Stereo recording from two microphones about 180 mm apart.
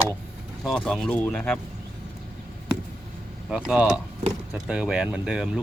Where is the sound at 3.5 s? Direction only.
5° right (ahead or behind).